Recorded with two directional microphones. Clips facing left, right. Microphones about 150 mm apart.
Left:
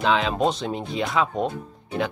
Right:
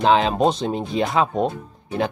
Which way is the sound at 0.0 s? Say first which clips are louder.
Right 5 dB; 40° right (ahead or behind).